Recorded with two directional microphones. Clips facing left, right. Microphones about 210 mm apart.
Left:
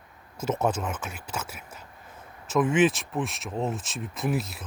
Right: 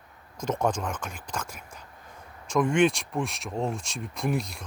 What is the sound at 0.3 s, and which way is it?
Speech, 5° left (ahead or behind).